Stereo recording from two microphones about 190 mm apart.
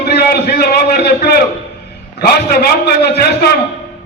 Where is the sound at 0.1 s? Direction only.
60° left (ahead or behind).